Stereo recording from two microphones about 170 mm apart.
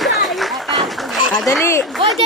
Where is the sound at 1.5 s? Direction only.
15° left (ahead or behind).